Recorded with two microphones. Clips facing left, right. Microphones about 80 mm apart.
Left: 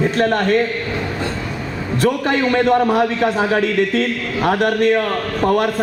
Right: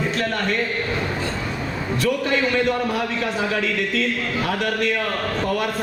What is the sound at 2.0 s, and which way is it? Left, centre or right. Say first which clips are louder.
A man's voice: left 5 dB; left.